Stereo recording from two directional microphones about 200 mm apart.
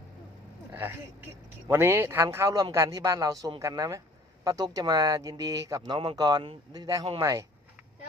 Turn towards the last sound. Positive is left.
turn(degrees=-15)  # may be behind; listen again after turning